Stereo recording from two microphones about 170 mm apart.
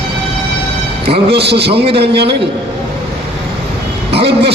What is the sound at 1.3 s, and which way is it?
Speech, 80° right.